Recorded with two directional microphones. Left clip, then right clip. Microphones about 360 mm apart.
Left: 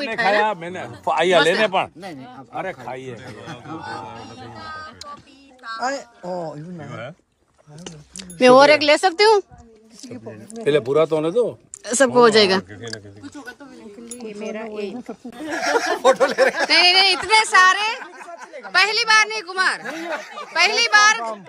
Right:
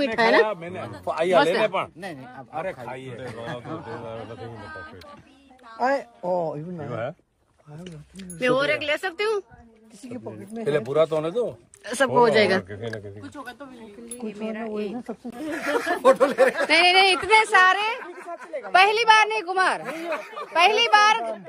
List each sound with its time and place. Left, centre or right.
0.0 s a woman's voice: centre
0.5 s speech: left
5.8 s a woman's voice: right
7.8 s speech: centre
10.6 s speech: left
11.8 s speech: centre
14.0 s speech: centre
16.6 s a woman's voice: centre